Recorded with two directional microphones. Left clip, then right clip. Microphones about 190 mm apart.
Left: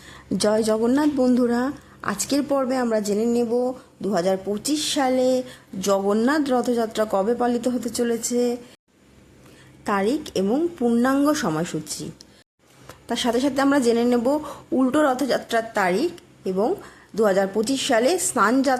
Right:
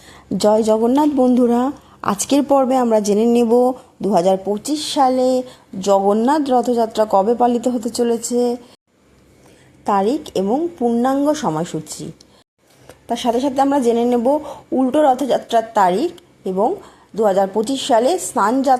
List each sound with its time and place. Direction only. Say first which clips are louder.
0.0 s a sound: right 6 dB; 15° right (ahead or behind)
0.9 s a woman's voice: right 5 dB; 5° right (ahead or behind)
9.8 s a woman's voice: right 6 dB; 10° right (ahead or behind)